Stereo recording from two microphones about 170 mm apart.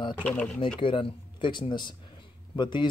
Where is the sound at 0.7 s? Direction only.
30° left (ahead or behind).